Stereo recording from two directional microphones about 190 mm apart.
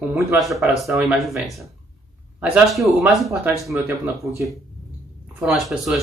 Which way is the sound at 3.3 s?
10° right (ahead or behind).